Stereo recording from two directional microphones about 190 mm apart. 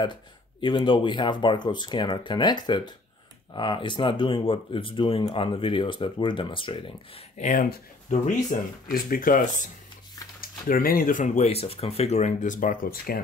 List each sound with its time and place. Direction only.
0.0 s speech: 25° left (ahead or behind); by 13.2 s 50° left (ahead or behind)